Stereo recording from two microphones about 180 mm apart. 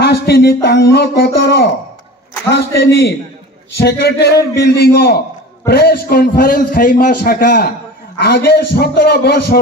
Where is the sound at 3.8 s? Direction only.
65° left (ahead or behind).